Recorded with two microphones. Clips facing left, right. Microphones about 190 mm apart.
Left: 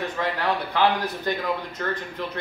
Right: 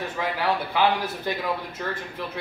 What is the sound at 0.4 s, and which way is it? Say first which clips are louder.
Speech: even; 10° right (ahead or behind).